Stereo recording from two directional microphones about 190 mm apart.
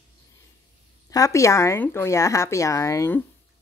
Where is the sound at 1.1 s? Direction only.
15° left (ahead or behind).